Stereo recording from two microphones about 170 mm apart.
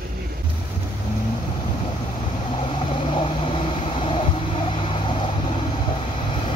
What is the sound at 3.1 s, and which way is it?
Vehicle, 30° left (ahead or behind).